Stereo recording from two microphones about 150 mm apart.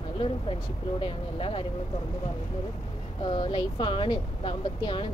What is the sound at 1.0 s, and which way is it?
Speech, 35° left (ahead or behind).